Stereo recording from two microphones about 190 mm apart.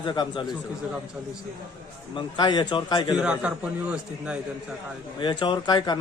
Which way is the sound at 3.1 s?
5° right (ahead or behind).